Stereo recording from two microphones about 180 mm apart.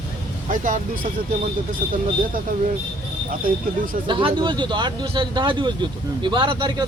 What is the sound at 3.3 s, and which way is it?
Speech, 50° right (ahead or behind).